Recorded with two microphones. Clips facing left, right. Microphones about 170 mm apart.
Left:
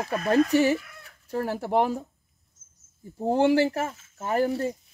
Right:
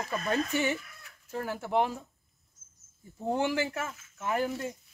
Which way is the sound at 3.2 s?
35° left (ahead or behind).